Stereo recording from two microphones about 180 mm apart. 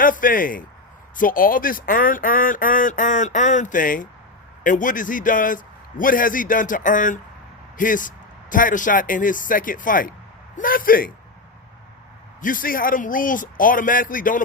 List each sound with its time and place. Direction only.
0.0 s speech: 50° left (ahead or behind)
12.4 s speech: 50° left (ahead or behind)